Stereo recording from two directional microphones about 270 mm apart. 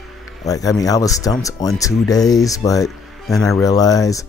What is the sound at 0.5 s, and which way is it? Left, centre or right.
Speech, centre.